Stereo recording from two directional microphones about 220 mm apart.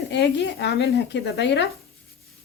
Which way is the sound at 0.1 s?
50° left (ahead or behind).